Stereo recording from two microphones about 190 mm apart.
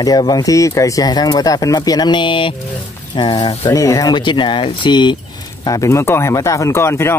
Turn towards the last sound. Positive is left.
turn(degrees=15)  # may be behind; listen again after turning